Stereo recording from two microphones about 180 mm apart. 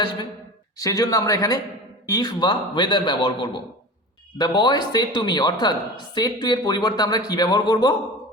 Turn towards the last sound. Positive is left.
turn(degrees=25)  # may be behind; listen again after turning